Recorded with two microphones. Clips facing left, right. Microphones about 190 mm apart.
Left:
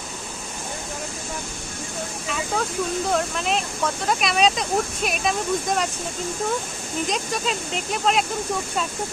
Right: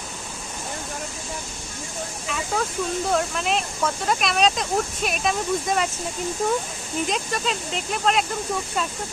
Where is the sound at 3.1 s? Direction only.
Centre (ahead or behind).